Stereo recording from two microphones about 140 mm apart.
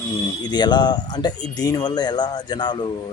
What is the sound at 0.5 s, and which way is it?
Speech, 30° left (ahead or behind).